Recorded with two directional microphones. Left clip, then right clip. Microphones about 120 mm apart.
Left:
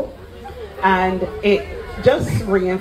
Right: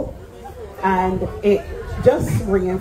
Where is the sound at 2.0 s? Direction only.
25° right (ahead or behind).